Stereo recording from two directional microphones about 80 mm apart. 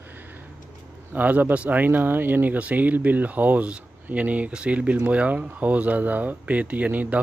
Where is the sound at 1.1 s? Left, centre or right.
Right.